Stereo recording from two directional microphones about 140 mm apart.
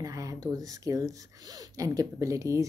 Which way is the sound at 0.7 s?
25° right (ahead or behind).